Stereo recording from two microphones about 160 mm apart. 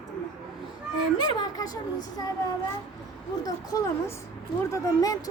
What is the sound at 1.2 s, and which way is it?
Speech, 25° left (ahead or behind).